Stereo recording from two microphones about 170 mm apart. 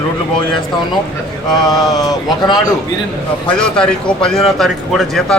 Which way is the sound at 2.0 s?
25° left (ahead or behind).